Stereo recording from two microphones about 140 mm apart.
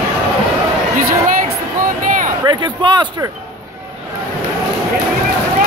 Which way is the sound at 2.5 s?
30° right (ahead or behind).